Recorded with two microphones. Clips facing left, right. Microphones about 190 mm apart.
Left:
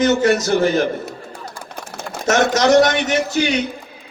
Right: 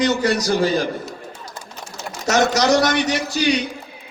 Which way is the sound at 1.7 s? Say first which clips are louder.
Left 3 dB; 55° left (ahead or behind).